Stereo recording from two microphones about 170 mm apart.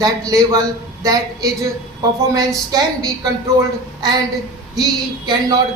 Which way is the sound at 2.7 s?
20° right (ahead or behind).